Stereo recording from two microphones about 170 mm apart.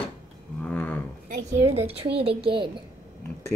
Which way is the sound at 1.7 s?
35° right (ahead or behind).